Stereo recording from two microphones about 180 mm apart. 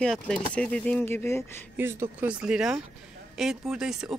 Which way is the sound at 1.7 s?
10° right (ahead or behind).